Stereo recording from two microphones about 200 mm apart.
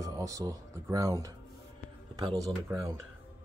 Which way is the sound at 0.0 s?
15° right (ahead or behind).